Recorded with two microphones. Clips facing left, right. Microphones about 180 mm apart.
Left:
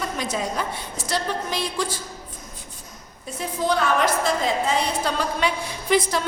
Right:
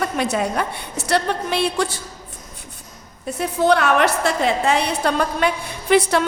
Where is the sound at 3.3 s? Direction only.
65° right (ahead or behind).